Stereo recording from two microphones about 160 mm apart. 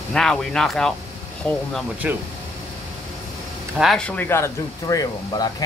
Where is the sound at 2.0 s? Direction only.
5° right (ahead or behind).